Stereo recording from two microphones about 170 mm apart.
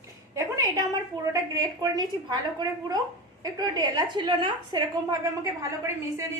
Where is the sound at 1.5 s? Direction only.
25° right (ahead or behind).